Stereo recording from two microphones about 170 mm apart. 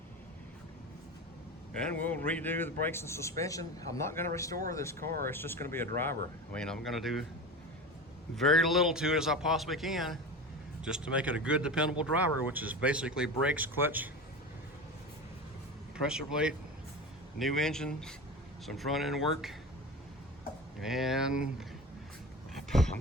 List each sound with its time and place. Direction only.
1.8 s a man's voice: 10° left (ahead or behind)
4.9 s speech: 60° right (ahead or behind)
5.2 s a man's voice: 15° left (ahead or behind)
8.4 s a man's voice: centre (ahead or behind)
16.0 s a man's voice: 5° right (ahead or behind)
20.8 s a man's voice: centre (ahead or behind)
22.5 s a sound: centre (ahead or behind)